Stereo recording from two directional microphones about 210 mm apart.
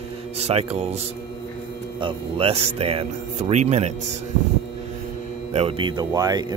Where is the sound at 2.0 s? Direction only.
25° right (ahead or behind).